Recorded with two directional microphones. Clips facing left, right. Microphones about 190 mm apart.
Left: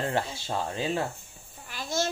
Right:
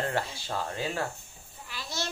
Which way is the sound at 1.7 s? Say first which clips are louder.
Left 7 dB; 50° left (ahead or behind).